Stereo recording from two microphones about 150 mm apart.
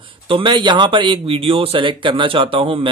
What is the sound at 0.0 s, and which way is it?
Speech, 35° right (ahead or behind).